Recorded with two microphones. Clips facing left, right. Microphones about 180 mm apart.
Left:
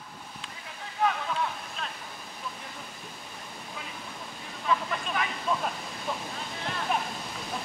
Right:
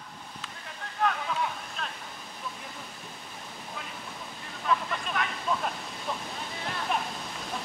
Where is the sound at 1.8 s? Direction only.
Centre (ahead or behind).